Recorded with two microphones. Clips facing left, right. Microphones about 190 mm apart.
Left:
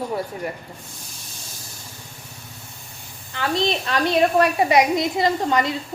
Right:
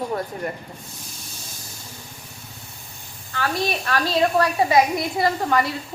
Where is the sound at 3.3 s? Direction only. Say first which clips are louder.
Left 2 dB; 20° left (ahead or behind).